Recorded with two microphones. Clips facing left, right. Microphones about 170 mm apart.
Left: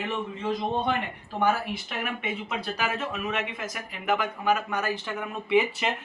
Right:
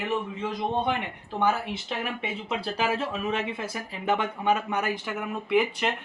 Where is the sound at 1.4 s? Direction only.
25° right (ahead or behind).